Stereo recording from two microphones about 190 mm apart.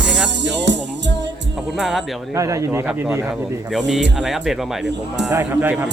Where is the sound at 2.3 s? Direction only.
15° right (ahead or behind).